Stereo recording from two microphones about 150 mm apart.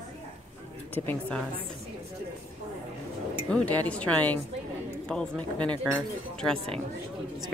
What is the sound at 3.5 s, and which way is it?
Speech, 10° left (ahead or behind).